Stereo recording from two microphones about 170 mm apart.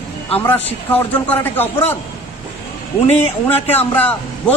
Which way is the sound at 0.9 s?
10° left (ahead or behind).